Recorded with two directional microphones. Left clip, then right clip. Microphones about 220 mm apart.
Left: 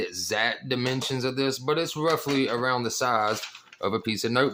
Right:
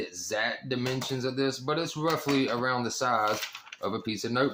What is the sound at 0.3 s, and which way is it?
Speech, 40° left (ahead or behind).